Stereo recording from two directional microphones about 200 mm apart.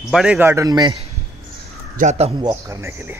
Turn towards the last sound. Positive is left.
turn(degrees=-10)  # may be behind; listen again after turning